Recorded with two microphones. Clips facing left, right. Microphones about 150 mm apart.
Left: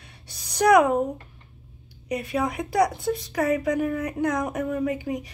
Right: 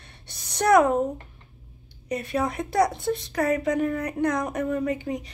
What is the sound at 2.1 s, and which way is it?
A woman's voice, 15° left (ahead or behind).